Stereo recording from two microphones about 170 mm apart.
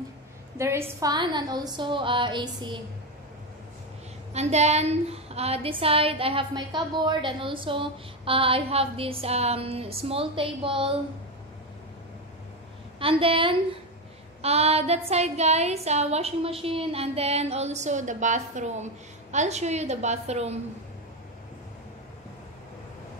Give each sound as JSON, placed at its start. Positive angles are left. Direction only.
{"t": 0.6, "sound": "a woman's voice", "side_deg": -15}
{"t": 4.3, "sound": "a woman's voice", "side_deg": -40}
{"t": 13.0, "sound": "a woman's voice", "side_deg": -35}